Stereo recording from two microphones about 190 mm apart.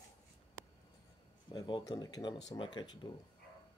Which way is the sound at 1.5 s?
20° left (ahead or behind).